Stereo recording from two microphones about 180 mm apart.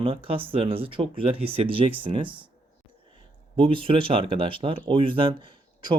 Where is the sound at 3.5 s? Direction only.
30° right (ahead or behind).